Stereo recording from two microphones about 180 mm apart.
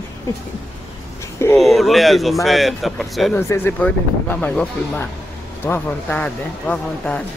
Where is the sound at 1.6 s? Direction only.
Centre (ahead or behind).